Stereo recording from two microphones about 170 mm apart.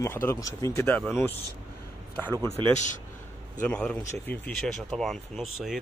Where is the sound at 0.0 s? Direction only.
15° left (ahead or behind).